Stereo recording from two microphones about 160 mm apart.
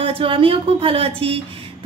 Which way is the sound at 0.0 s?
35° right (ahead or behind).